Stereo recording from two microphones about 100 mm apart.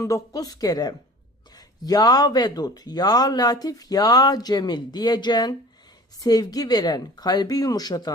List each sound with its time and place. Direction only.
0.0 s speech: 35° left (ahead or behind)